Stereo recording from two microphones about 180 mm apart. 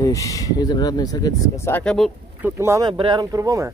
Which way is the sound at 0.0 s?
20° left (ahead or behind).